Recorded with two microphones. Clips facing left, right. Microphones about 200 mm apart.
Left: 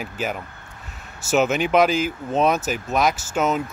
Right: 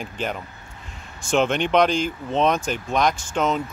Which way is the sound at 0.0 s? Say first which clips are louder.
Left 1 dB; 5° left (ahead or behind).